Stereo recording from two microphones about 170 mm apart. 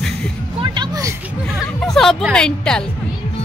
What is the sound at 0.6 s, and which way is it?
Speech, 25° right (ahead or behind).